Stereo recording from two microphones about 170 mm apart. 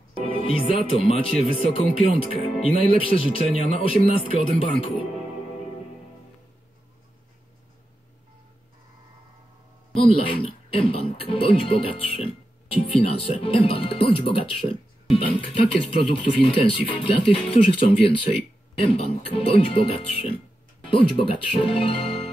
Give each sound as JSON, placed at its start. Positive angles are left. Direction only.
{"t": 0.4, "sound": "speech", "side_deg": 30}
{"t": 10.0, "sound": "speech", "side_deg": 35}